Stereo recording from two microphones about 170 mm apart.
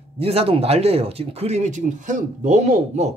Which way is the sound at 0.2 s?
35° right (ahead or behind).